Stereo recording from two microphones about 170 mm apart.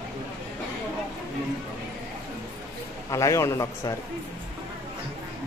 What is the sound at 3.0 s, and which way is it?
Speech, 20° left (ahead or behind).